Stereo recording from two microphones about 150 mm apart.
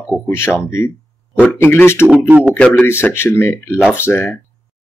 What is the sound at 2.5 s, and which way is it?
Speech, 10° left (ahead or behind).